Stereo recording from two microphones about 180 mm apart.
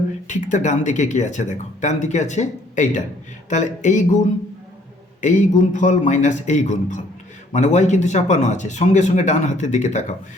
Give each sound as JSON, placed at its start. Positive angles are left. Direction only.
{"t": 0.3, "sound": "a man's voice", "side_deg": 45}
{"t": 5.2, "sound": "a man's voice", "side_deg": 45}